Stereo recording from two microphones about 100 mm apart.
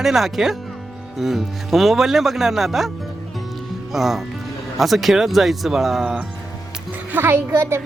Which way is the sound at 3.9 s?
Centre (ahead or behind).